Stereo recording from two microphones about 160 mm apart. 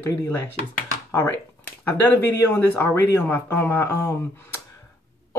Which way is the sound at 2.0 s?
15° left (ahead or behind).